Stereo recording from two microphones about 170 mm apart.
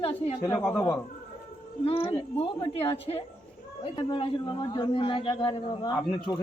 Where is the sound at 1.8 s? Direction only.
35° left (ahead or behind).